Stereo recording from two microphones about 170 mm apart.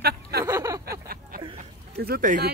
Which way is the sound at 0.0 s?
70° right (ahead or behind).